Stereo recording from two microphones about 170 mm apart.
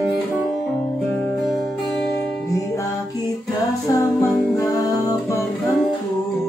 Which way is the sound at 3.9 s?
20° left (ahead or behind).